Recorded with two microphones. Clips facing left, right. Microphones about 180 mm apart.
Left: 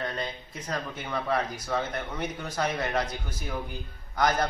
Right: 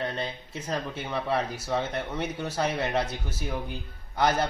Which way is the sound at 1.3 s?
25° right (ahead or behind).